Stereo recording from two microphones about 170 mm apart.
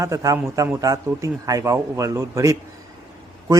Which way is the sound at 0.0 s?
20° right (ahead or behind).